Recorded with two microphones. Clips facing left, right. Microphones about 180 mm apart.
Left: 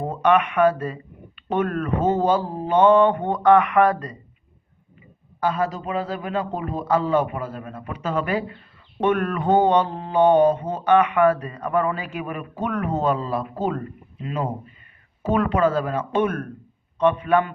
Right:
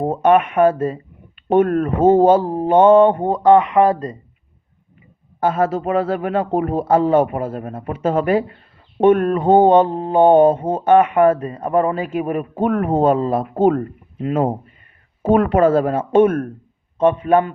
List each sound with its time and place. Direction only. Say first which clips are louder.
0.0 s a man's voice: right 5 dB; 45° right (ahead or behind)
3.3 s speech: right 3 dB; 25° right (ahead or behind)
5.4 s a man's voice: right 6 dB; 50° right (ahead or behind)